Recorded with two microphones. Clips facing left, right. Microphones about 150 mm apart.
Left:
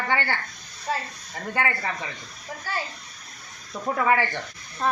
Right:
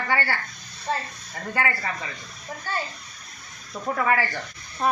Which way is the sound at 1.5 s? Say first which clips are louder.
Even; 20° left (ahead or behind).